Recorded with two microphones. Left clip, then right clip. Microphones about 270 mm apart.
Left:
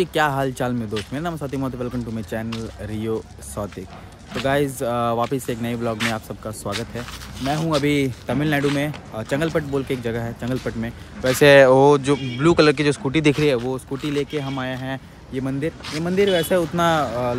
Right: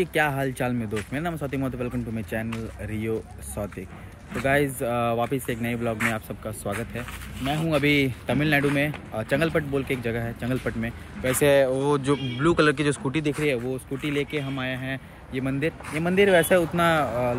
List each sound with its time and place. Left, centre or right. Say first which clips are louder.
0.0 s speech: left 4 dB; centre
4.4 s speech: left 2 dB; centre
11.4 s speech: left 8 dB; left
11.8 s speech: left 8 dB; centre